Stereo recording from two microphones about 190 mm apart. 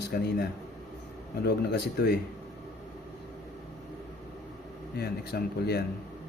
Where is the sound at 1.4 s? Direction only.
60° left (ahead or behind).